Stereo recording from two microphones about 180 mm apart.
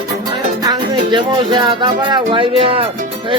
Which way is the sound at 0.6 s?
25° right (ahead or behind).